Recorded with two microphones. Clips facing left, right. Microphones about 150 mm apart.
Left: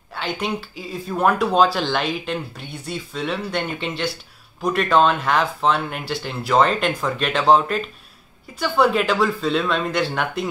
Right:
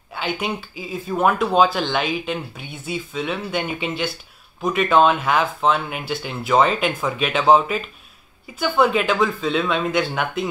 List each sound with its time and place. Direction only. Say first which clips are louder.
0.1 s speech: even; 5° right (ahead or behind)